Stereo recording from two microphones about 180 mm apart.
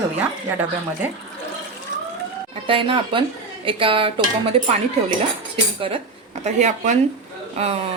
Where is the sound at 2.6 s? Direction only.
30° right (ahead or behind).